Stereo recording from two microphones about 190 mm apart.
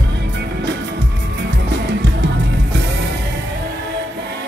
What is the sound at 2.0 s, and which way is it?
Music, 65° right (ahead or behind).